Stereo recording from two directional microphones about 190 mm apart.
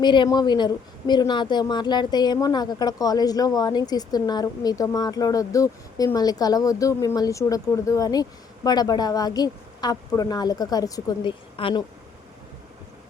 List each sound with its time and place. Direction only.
0.0 s speech: 25° left (ahead or behind)